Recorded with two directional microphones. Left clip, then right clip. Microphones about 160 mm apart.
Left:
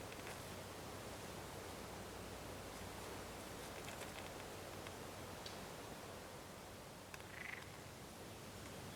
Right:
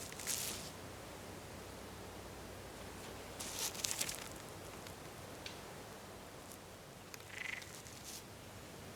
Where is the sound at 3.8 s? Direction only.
20° right (ahead or behind).